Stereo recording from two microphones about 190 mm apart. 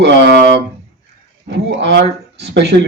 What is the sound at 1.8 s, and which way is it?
Mantra, 65° right (ahead or behind).